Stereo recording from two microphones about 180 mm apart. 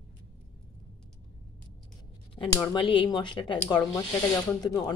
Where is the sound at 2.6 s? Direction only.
25° left (ahead or behind).